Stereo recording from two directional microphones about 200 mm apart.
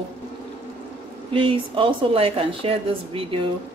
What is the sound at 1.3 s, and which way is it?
Speech, 25° right (ahead or behind).